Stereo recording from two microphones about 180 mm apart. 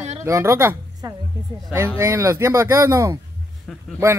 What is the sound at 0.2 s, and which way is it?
A woman's voice, 15° right (ahead or behind).